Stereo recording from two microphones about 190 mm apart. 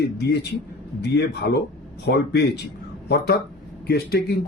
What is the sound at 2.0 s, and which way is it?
Speech, 60° left (ahead or behind).